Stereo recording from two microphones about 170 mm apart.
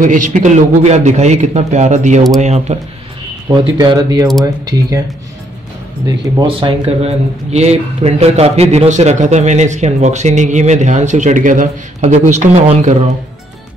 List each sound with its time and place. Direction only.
0.0 s a man's voice: 50° right (ahead or behind)
3.4 s speech: 25° right (ahead or behind)
6.4 s speech: 35° right (ahead or behind)